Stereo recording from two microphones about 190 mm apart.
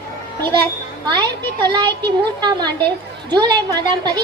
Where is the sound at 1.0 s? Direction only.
20° right (ahead or behind).